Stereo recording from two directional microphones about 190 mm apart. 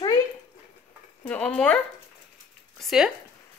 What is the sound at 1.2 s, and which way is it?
Speech, 5° left (ahead or behind).